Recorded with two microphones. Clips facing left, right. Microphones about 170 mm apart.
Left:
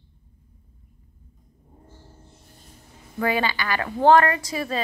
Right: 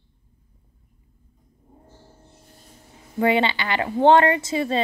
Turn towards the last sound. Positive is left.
turn(degrees=-25)  # may be behind; listen again after turning